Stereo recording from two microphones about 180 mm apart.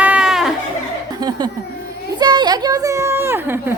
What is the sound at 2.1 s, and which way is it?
Children playing, 25° right (ahead or behind).